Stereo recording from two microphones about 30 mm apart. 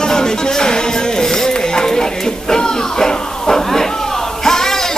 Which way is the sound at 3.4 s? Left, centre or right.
Centre.